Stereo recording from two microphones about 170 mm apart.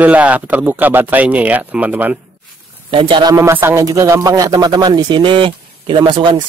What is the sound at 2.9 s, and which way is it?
Speech, 30° right (ahead or behind).